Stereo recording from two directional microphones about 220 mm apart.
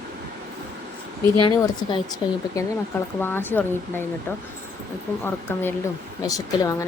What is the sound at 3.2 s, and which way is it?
Speech, 10° left (ahead or behind).